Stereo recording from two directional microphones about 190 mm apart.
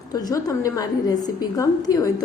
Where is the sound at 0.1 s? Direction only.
20° left (ahead or behind).